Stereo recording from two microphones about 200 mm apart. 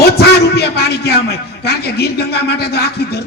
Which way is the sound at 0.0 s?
55° left (ahead or behind).